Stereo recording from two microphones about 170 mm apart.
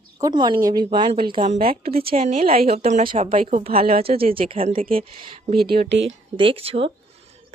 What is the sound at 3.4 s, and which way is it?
Speech, 55° right (ahead or behind).